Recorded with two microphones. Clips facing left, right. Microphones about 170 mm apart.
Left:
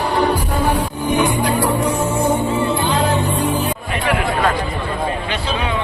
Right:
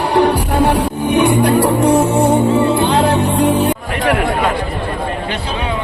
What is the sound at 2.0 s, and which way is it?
Music, 35° right (ahead or behind).